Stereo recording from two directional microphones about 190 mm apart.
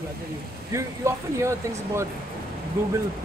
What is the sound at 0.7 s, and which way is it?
Speech, 15° right (ahead or behind).